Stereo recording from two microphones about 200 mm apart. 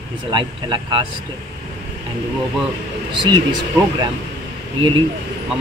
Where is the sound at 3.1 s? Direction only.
20° right (ahead or behind).